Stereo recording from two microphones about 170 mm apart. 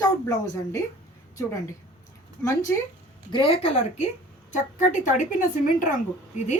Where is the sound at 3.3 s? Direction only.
35° left (ahead or behind); by 5.9 s 50° left (ahead or behind).